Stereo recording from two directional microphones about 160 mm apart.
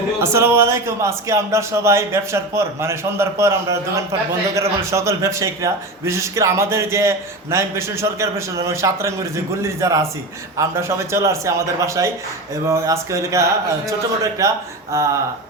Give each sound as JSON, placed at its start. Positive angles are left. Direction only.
{"t": 0.2, "sound": "a man's voice", "side_deg": -15}
{"t": 14.4, "sound": "a man's voice", "side_deg": -20}